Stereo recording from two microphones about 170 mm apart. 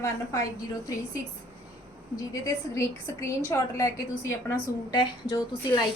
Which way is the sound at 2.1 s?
20° left (ahead or behind).